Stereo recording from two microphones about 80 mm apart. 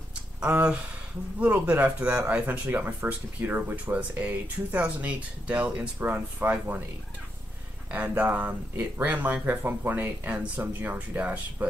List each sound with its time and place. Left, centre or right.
0.1 s a sound: centre
1.4 s speech: centre
8.2 s speech: centre